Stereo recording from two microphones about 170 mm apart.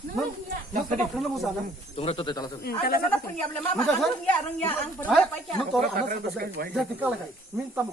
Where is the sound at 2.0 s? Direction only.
35° left (ahead or behind).